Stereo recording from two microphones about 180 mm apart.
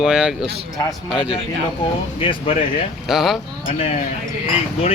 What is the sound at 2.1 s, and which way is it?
Speech, 30° left (ahead or behind).